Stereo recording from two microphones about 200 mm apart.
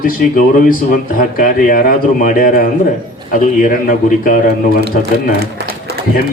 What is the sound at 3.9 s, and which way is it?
Speech, 40° left (ahead or behind).